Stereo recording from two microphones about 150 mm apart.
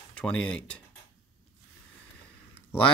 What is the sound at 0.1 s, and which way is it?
Speech, 5° left (ahead or behind).